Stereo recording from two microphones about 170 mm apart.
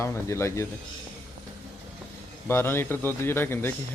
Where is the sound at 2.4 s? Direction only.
15° left (ahead or behind).